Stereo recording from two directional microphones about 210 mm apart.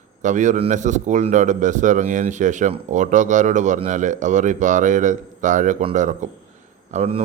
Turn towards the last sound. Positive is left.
turn(degrees=-30)  # may be behind; listen again after turning